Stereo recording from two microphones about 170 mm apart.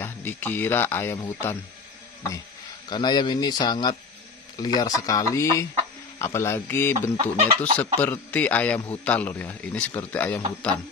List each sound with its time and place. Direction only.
0.0 s speech: 10° left (ahead or behind)
2.9 s a man's voice: 25° left (ahead or behind)
7.2 s speech: 35° right (ahead or behind)
7.8 s a man's voice: 10° left (ahead or behind)